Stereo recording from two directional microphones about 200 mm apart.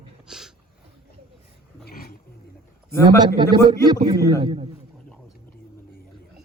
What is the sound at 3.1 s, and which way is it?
A man's voice, 20° right (ahead or behind).